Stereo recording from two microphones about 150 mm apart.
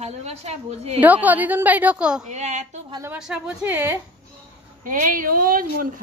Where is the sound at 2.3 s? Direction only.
50° right (ahead or behind).